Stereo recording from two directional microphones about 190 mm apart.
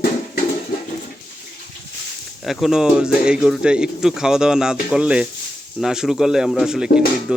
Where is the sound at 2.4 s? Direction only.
Centre (ahead or behind).